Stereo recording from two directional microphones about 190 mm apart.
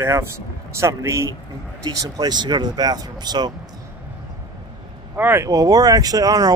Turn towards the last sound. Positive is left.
turn(degrees=-20)  # may be behind; listen again after turning